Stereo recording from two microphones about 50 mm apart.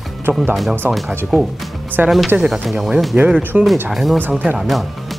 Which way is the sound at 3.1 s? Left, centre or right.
Right.